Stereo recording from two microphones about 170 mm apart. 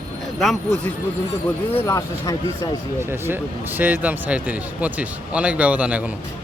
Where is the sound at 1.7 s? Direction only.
15° left (ahead or behind).